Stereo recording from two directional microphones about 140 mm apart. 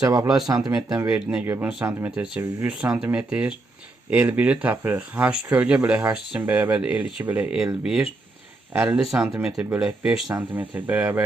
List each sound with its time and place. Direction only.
0.0 s speech: 25° right (ahead or behind)
1.0 s speech: 5° right (ahead or behind)
2.1 s speech: 5° right (ahead or behind)
8.7 s speech: 10° right (ahead or behind)